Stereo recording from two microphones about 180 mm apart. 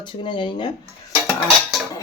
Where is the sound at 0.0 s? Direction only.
25° left (ahead or behind).